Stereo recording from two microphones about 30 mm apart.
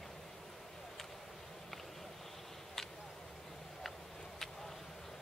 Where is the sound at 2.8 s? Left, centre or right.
Centre.